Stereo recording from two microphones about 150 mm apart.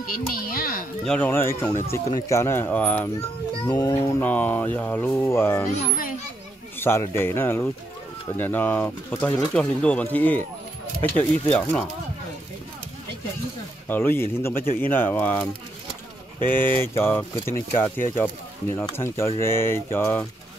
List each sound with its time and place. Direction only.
0.0 s a child's voice: 70° left (ahead or behind)
1.0 s speech: 10° left (ahead or behind)
3.7 s speech: 25° left (ahead or behind)
4.2 s speech: 10° left (ahead or behind)
6.8 s speech: 15° left (ahead or behind)
13.8 s speech: 15° left (ahead or behind)